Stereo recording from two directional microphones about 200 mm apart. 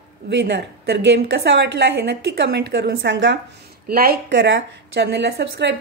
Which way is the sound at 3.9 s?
50° right (ahead or behind).